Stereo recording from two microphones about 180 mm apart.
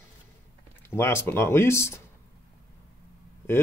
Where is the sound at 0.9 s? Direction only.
15° left (ahead or behind).